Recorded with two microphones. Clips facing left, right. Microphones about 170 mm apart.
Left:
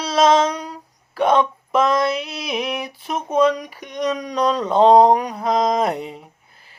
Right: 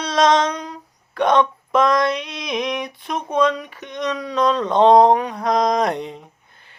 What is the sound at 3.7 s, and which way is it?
Speech, 10° left (ahead or behind).